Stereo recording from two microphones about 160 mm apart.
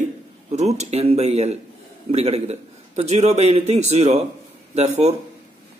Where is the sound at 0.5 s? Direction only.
45° right (ahead or behind).